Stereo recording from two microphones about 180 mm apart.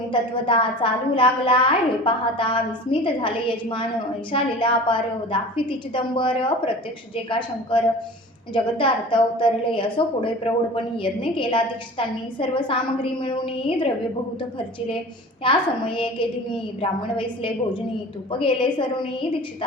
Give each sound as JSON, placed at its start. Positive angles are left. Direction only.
{"t": 0.1, "sound": "a woman's voice", "side_deg": 30}
{"t": 15.4, "sound": "a woman's voice", "side_deg": 30}